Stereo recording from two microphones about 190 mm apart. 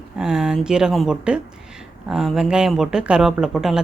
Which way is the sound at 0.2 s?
5° right (ahead or behind).